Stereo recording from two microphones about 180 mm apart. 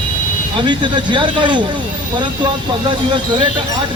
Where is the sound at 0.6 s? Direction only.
25° right (ahead or behind).